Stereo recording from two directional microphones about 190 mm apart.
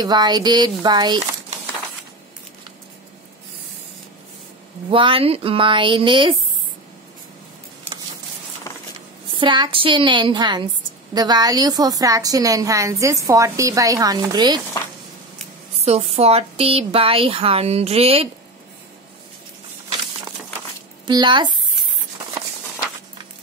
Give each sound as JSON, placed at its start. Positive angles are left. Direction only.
{"t": 0.0, "sound": "a woman's voice", "side_deg": -20}
{"t": 4.9, "sound": "a woman's voice", "side_deg": -25}
{"t": 9.3, "sound": "a woman's voice", "side_deg": -25}
{"t": 15.8, "sound": "speech", "side_deg": -35}
{"t": 21.1, "sound": "a woman's voice", "side_deg": -25}